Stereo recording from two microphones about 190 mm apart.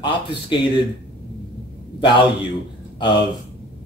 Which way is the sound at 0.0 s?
25° left (ahead or behind).